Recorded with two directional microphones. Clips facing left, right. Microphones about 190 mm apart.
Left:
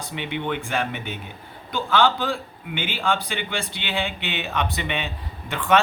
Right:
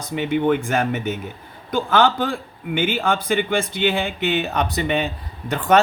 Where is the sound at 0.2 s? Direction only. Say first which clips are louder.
Right 9 dB; 45° right (ahead or behind).